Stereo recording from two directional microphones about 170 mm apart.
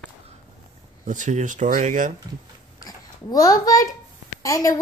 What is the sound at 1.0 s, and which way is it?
Speech, 50° right (ahead or behind).